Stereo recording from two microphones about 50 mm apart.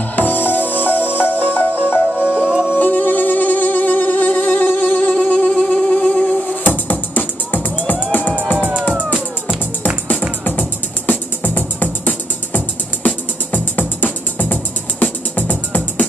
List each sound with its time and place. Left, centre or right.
0.1 s music: left
2.1 s music: centre
2.7 s music: left
5.5 s a sound: centre
6.6 s music: left
8.5 s music: right
9.0 s music: centre
10.4 s music: left